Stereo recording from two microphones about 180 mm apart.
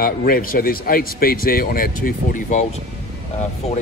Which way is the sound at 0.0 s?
55° left (ahead or behind).